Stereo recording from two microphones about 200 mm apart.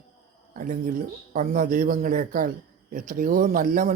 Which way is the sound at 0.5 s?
40° right (ahead or behind).